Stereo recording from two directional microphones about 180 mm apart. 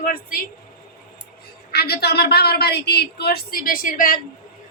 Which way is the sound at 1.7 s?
60° left (ahead or behind).